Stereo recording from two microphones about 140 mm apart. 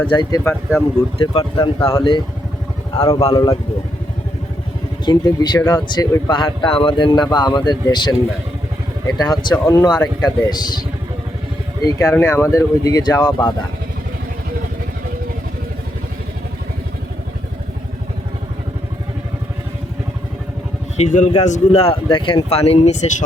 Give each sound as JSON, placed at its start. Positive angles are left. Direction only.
{"t": 0.1, "sound": "speech", "side_deg": 30}
{"t": 1.2, "sound": "speech", "side_deg": 35}
{"t": 1.8, "sound": "speech", "side_deg": 20}
{"t": 5.0, "sound": "speech", "side_deg": 30}
{"t": 11.9, "sound": "speech", "side_deg": 20}
{"t": 20.9, "sound": "speech", "side_deg": 55}
{"t": 22.1, "sound": "speech", "side_deg": 35}
{"t": 22.4, "sound": "speech", "side_deg": 45}